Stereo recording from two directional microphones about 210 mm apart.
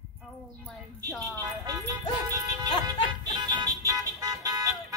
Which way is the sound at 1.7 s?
15° right (ahead or behind).